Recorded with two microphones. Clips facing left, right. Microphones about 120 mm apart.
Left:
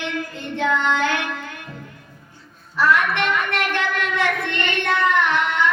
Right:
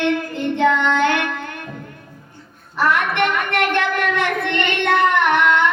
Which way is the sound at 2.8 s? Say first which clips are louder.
Right 1 dB; 60° right (ahead or behind).